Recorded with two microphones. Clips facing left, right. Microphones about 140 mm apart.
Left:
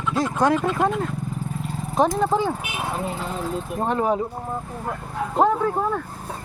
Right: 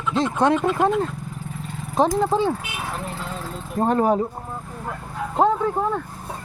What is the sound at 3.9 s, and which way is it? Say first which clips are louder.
Speech: right 3 dB; 40° right (ahead or behind).